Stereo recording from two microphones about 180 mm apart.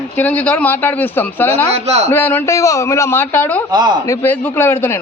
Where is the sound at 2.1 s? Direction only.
10° left (ahead or behind).